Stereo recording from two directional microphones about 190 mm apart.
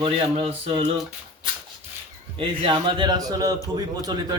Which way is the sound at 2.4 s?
25° right (ahead or behind).